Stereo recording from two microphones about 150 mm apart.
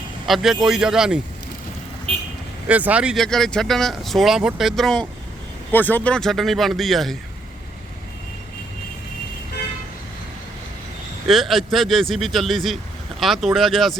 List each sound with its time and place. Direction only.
0.3 s speech: centre (ahead or behind)
2.1 s speech: 40° right (ahead or behind)
2.6 s speech: 10° right (ahead or behind)
3.2 s speech: 5° left (ahead or behind)
11.3 s speech: centre (ahead or behind)